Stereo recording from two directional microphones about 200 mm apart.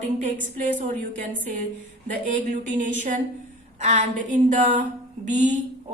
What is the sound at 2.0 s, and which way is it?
A woman's voice, 40° right (ahead or behind).